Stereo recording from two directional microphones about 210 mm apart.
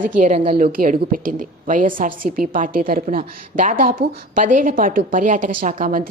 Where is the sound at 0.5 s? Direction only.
40° right (ahead or behind).